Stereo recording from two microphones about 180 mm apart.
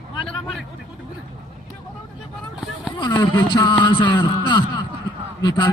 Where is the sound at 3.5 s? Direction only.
25° left (ahead or behind).